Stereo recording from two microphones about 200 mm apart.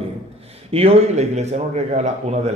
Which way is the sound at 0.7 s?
30° right (ahead or behind).